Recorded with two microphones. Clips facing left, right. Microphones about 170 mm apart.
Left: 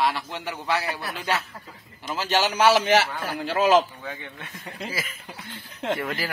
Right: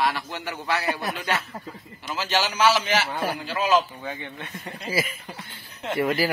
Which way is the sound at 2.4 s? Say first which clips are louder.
Left 2 dB; 55° left (ahead or behind).